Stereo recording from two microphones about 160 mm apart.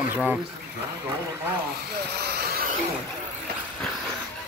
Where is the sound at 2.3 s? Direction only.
80° right.